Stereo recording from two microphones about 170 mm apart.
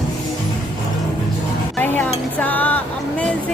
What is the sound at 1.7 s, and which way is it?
Speech, 10° left (ahead or behind).